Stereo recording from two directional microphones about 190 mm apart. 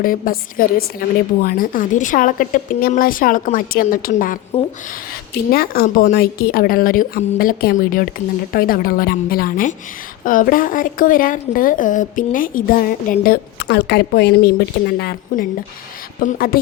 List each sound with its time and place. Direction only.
0.0 s a woman's voice: 45° left (ahead or behind)
5.5 s a woman's voice: 50° left (ahead or behind)